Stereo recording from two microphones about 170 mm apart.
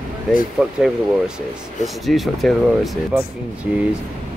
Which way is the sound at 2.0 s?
Centre (ahead or behind).